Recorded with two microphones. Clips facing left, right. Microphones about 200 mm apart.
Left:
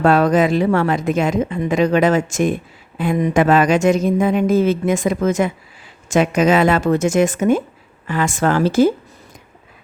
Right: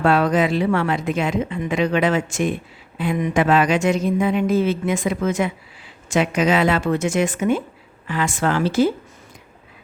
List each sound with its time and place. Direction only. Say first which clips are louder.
0.0 s a woman's voice: left 4 dB; 45° left (ahead or behind)